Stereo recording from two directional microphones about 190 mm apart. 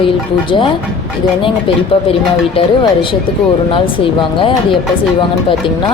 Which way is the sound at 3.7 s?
25° left (ahead or behind).